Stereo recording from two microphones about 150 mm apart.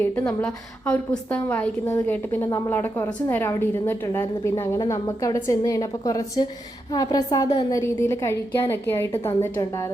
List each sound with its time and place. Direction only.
0.0 s a woman's voice: 15° left (ahead or behind)